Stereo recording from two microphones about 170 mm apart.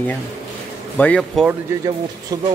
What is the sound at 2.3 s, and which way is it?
Speech, 20° right (ahead or behind).